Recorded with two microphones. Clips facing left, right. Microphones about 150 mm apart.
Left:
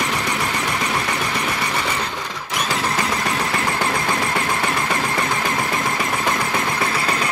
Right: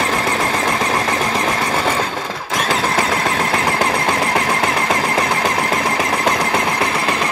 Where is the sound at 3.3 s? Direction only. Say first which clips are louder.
Right 4 dB; 90° right.